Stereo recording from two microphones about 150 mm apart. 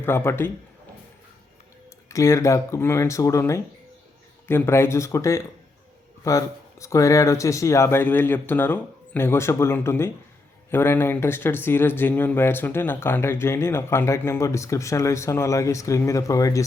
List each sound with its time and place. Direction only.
0.0 s speech: 15° left (ahead or behind)
2.0 s speech: 20° left (ahead or behind)